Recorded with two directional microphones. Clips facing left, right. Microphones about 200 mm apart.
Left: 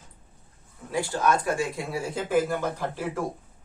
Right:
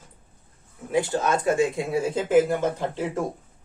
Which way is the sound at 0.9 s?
20° right (ahead or behind).